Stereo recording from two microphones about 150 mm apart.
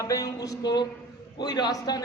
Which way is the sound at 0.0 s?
25° left (ahead or behind).